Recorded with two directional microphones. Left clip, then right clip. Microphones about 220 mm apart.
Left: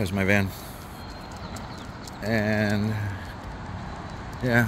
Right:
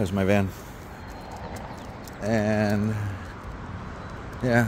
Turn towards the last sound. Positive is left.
turn(degrees=-20)  # may be behind; listen again after turning